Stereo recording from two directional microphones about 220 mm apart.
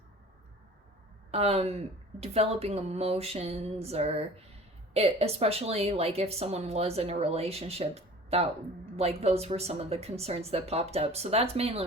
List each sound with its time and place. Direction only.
1.3 s a woman's voice: 30° right (ahead or behind)